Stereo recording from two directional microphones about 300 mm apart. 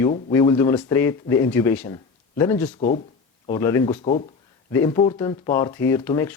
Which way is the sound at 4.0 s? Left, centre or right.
Left.